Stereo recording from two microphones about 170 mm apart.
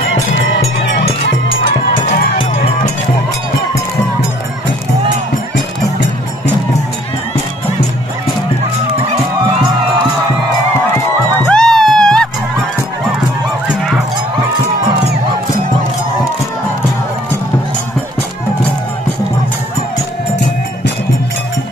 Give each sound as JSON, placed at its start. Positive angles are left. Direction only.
{"t": 0.7, "sound": "music", "side_deg": 90}
{"t": 11.3, "sound": "music", "side_deg": 5}